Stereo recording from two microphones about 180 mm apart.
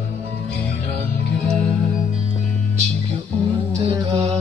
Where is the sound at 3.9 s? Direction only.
35° right (ahead or behind).